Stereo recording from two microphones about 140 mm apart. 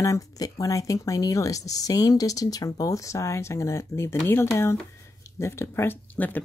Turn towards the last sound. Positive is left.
turn(degrees=10)  # may be behind; listen again after turning